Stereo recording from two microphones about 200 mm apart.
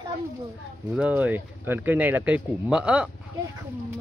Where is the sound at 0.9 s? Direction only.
5° right (ahead or behind).